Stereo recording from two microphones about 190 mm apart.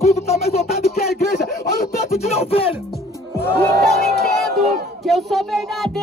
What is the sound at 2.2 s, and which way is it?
Music, 35° left (ahead or behind).